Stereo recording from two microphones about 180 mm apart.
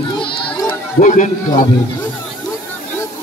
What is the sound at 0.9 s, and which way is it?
Speech, 45° left (ahead or behind).